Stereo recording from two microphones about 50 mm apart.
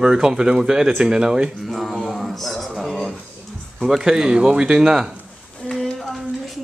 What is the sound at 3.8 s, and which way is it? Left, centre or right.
Speech, centre.